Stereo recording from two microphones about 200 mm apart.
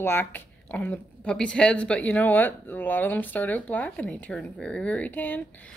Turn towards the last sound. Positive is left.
turn(degrees=10)  # may be behind; listen again after turning